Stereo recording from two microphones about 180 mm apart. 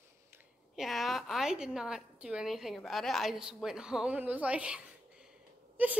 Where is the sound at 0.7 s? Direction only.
Centre (ahead or behind).